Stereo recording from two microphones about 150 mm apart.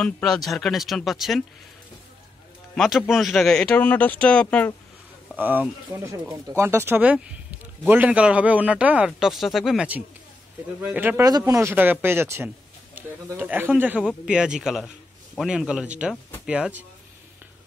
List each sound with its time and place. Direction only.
0.0 s speech: 5° left (ahead or behind)
2.7 s speech: 5° left (ahead or behind)
5.3 s speech: 10° right (ahead or behind)
11.2 s speech: 20° right (ahead or behind)